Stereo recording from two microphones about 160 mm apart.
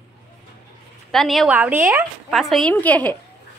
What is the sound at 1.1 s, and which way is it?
Speech, centre (ahead or behind).